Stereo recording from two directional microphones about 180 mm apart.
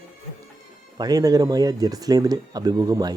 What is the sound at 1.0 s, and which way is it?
Speech, 20° right (ahead or behind).